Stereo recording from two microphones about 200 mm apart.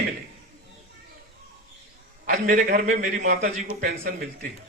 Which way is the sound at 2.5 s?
40° right (ahead or behind).